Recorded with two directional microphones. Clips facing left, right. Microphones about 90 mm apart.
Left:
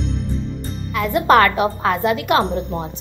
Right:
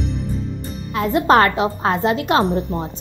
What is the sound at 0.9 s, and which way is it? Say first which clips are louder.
A woman's voice: even; 25° right (ahead or behind).